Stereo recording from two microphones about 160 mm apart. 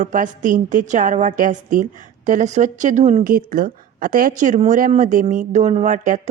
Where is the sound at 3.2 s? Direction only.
60° right (ahead or behind).